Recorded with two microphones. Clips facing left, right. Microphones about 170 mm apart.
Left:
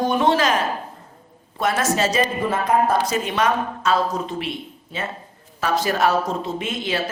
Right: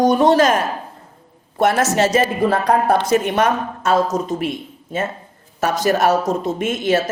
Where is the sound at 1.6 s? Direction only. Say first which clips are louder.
Right 5 dB; 65° right (ahead or behind).